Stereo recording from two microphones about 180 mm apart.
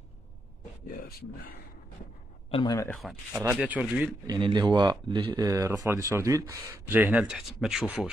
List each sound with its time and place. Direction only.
0.8 s speech: 55° left (ahead or behind)
2.5 s speech: 20° left (ahead or behind)
2.9 s speech: centre (ahead or behind)
4.3 s speech: 25° right (ahead or behind); by 8.1 s 10° right (ahead or behind)